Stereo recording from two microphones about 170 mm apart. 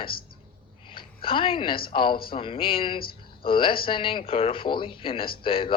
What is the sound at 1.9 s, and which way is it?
Speech, 30° left (ahead or behind).